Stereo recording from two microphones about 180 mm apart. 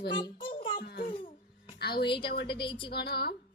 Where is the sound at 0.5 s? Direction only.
30° left (ahead or behind).